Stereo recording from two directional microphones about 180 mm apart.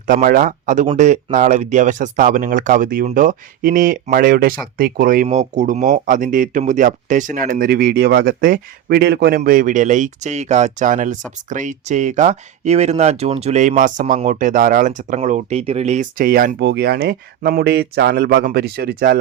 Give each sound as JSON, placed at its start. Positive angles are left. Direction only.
{"t": 0.1, "sound": "speech", "side_deg": -50}
{"t": 16.6, "sound": "speech", "side_deg": -70}